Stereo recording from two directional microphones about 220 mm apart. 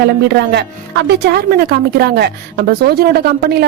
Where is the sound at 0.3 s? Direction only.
50° right (ahead or behind).